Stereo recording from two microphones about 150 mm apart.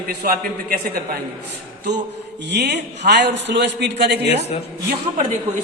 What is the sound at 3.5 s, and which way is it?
Speech, 90° right.